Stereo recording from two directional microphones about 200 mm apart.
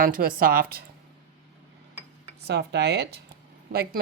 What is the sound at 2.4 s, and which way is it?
Speech, 55° right (ahead or behind).